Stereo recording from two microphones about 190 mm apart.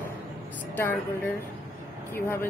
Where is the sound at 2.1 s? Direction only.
10° left (ahead or behind).